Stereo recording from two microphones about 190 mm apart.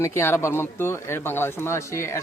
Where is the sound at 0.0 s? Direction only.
15° left (ahead or behind).